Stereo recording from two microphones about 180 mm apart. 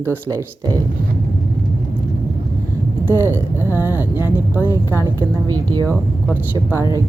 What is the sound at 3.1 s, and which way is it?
Speech, 15° right (ahead or behind).